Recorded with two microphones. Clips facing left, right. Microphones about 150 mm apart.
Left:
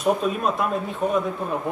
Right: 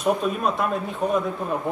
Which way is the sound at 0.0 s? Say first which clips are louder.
Left 1 dB; centre (ahead or behind).